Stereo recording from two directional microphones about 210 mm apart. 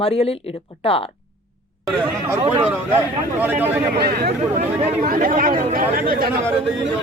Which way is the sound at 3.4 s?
10° right (ahead or behind).